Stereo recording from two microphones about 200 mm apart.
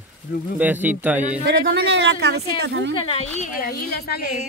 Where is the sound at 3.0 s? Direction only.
30° left (ahead or behind).